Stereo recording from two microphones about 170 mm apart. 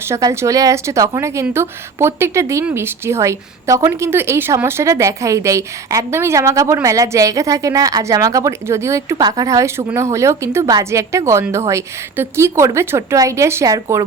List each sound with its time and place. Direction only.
0.1 s speech: 20° right (ahead or behind)